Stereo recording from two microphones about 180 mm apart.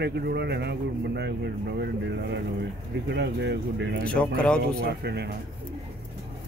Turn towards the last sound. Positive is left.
turn(degrees=-65)  # may be behind; listen again after turning